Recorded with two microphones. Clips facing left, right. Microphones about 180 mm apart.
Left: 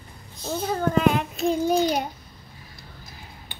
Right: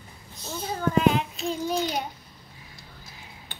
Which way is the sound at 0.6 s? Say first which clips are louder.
Left 2 dB; 50° left (ahead or behind).